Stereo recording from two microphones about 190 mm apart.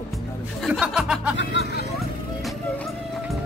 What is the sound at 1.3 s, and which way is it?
Speech, 70° left (ahead or behind).